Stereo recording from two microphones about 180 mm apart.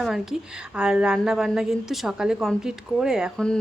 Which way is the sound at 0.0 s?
Centre (ahead or behind).